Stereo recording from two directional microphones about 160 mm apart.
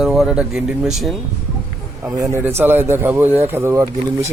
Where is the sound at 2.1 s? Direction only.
20° right (ahead or behind).